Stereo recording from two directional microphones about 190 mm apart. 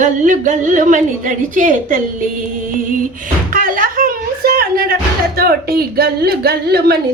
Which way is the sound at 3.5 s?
45° right (ahead or behind).